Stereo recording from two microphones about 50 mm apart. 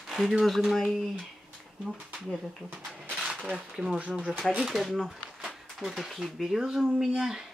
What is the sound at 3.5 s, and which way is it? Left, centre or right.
Speech, centre.